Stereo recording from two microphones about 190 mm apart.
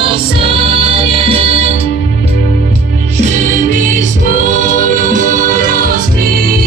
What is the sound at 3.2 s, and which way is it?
Music, 40° right (ahead or behind).